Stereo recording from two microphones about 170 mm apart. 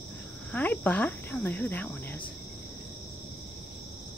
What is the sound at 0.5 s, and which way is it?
Speech, 10° left (ahead or behind).